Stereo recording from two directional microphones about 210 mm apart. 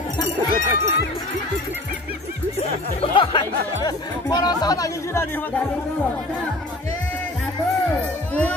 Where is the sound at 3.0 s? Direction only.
20° left (ahead or behind).